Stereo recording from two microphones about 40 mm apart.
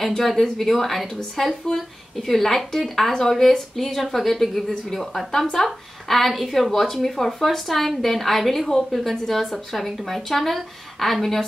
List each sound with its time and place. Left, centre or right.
0.1 s a woman's voice: centre